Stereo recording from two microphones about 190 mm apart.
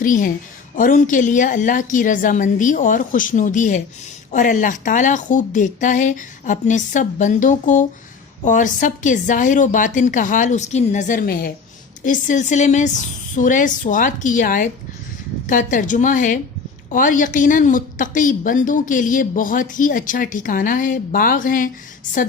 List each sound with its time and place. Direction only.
0.0 s a woman's voice: 45° left (ahead or behind)